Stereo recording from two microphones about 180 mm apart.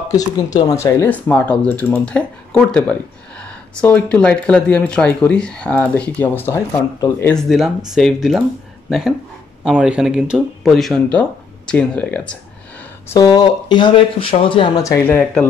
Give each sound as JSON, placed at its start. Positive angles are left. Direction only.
{"t": 0.1, "sound": "speech", "side_deg": 20}
{"t": 7.3, "sound": "speech", "side_deg": 0}
{"t": 13.1, "sound": "speech", "side_deg": 20}
{"t": 14.8, "sound": "speech", "side_deg": 15}